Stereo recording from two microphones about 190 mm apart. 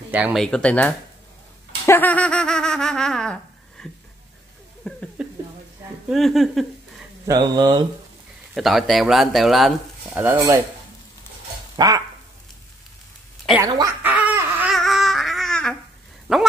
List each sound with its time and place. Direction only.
0.1 s speech: 5° right (ahead or behind)
1.9 s a sound: 10° left (ahead or behind)
4.9 s a sound: centre (ahead or behind)
6.0 s speech: centre (ahead or behind)
7.2 s mantra: 20° right (ahead or behind)
8.5 s speech: centre (ahead or behind)
10.2 s speech: 15° right (ahead or behind)
11.7 s dog: 20° right (ahead or behind)
13.6 s speech: 20° right (ahead or behind)
14.0 s a sound: 10° right (ahead or behind)
16.3 s speech: 5° right (ahead or behind)